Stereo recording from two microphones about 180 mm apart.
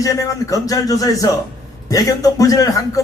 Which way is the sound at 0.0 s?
20° left (ahead or behind).